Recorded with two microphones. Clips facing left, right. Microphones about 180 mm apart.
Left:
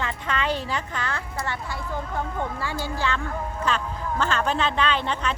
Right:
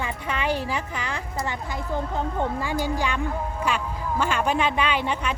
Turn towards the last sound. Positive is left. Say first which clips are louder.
# even
turn(degrees=-10)  # may be behind; listen again after turning